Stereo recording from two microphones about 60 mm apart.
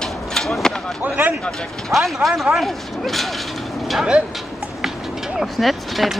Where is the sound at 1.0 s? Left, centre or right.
Right.